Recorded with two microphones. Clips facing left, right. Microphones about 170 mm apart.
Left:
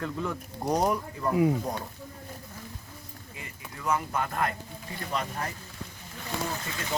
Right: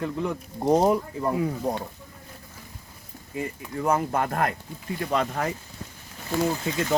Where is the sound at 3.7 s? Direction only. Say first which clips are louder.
Right 5 dB; 45° right (ahead or behind).